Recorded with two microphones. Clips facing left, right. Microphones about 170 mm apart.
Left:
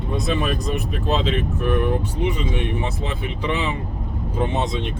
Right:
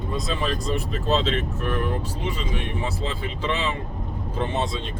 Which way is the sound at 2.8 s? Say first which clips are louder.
Left 2 dB; 15° left (ahead or behind).